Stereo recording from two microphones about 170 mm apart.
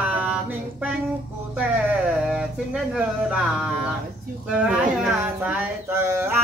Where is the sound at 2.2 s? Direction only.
5° right (ahead or behind).